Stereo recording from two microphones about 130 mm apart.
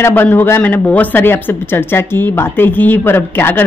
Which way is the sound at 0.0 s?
15° left (ahead or behind).